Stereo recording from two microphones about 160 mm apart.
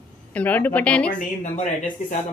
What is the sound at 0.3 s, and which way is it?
Speech, 10° left (ahead or behind).